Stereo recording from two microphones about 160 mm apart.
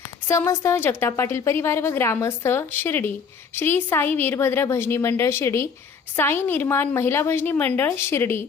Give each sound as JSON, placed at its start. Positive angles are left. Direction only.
{"t": 0.3, "sound": "a woman's voice", "side_deg": 15}